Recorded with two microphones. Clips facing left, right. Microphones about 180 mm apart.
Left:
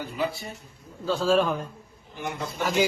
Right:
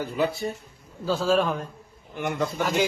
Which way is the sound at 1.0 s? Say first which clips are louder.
Even; 5° right (ahead or behind).